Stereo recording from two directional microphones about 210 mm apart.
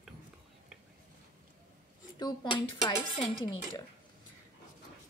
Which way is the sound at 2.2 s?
20° left (ahead or behind).